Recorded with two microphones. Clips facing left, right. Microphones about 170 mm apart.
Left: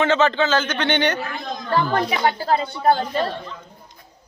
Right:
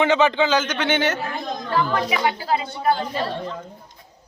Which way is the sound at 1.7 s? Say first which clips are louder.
Left 2 dB; 40° left (ahead or behind).